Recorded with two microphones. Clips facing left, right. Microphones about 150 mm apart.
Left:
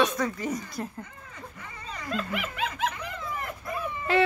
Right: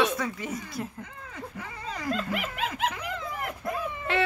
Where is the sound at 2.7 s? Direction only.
75° right (ahead or behind).